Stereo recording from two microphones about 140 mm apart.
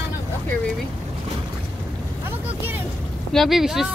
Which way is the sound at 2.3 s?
15° right (ahead or behind).